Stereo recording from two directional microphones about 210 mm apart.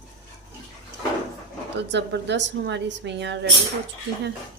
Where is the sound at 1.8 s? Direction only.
55° right (ahead or behind).